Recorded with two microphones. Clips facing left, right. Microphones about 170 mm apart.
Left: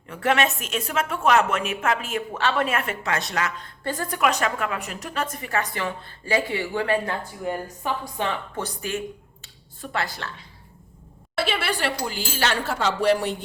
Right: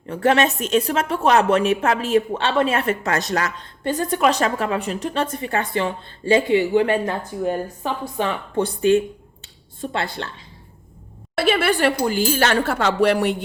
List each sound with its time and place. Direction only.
0.1 s a woman's voice: 35° right (ahead or behind)
3.8 s a woman's voice: 25° right (ahead or behind)
9.4 s a sound: 25° right (ahead or behind)
11.3 s speech: 50° right (ahead or behind)